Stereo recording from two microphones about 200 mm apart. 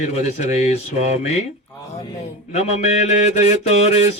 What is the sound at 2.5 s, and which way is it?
Speech, 35° left (ahead or behind).